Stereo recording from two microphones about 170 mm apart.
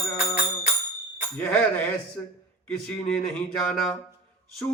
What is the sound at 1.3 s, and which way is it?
Speech, 10° left (ahead or behind).